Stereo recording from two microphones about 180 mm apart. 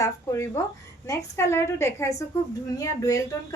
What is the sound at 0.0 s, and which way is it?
A woman's voice, 15° left (ahead or behind).